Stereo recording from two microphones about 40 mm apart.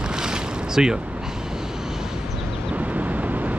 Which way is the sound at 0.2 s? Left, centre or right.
Centre.